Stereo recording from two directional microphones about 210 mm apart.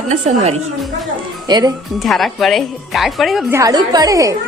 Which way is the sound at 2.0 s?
Centre (ahead or behind).